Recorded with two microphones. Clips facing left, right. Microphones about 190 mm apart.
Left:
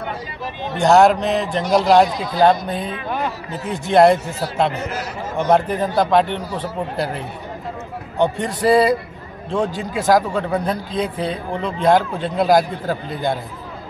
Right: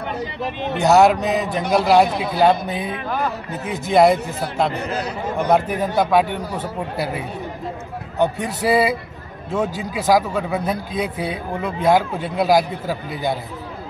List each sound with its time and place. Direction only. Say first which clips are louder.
0.4 s speech: right 3 dB; 65° right (ahead or behind)
0.7 s a man's voice: left 1 dB; 5° right (ahead or behind)
1.6 s speech: left 2 dB; 60° right (ahead or behind)
2.2 s a man's voice: left 1 dB; 10° right (ahead or behind)
8.4 s a man's voice: left 5 dB; 5° right (ahead or behind)